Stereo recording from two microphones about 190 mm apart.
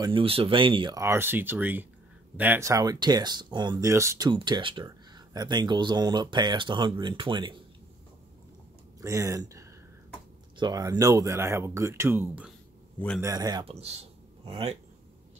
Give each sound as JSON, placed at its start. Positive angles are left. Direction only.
{"t": 0.0, "sound": "speech", "side_deg": -25}
{"t": 4.3, "sound": "speech", "side_deg": -25}
{"t": 9.0, "sound": "speech", "side_deg": -15}